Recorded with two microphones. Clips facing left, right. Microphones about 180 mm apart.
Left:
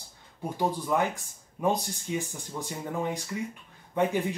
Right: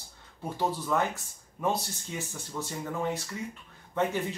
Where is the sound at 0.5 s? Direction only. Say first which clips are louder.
Left 2 dB; 15° left (ahead or behind).